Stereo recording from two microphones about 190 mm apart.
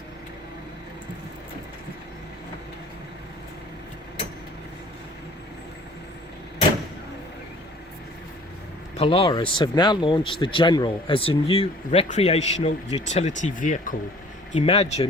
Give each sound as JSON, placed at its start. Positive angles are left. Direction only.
{"t": 9.0, "sound": "speech", "side_deg": 30}
{"t": 14.5, "sound": "speech", "side_deg": 30}